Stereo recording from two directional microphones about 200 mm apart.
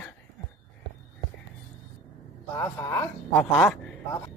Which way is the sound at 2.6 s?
15° left (ahead or behind).